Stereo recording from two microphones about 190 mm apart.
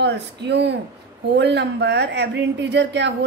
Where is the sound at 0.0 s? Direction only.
65° right (ahead or behind).